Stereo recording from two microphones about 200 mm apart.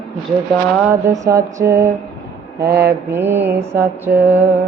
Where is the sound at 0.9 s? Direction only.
15° right (ahead or behind).